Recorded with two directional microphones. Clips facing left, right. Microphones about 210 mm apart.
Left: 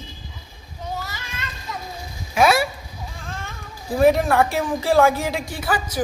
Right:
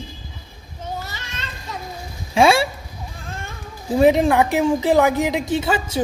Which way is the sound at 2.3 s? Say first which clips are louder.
Right 2 dB; 30° right (ahead or behind).